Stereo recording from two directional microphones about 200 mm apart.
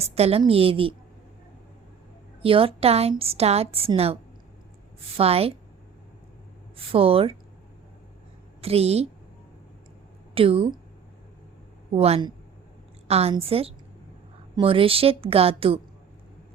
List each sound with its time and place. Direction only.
0.0 s a woman's voice: 30° right (ahead or behind)
2.4 s a woman's voice: 25° right (ahead or behind)
6.7 s a woman's voice: 30° right (ahead or behind)
8.6 s a woman's voice: 30° right (ahead or behind)
10.3 s a woman's voice: 30° right (ahead or behind)
11.9 s a woman's voice: 30° right (ahead or behind)